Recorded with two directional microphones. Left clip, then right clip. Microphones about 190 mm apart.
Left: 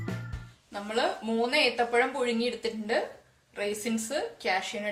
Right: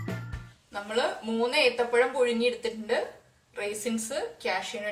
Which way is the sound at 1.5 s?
25° left (ahead or behind).